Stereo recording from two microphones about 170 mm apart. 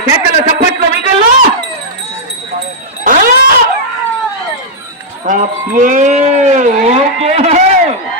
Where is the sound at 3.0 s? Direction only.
55° right (ahead or behind).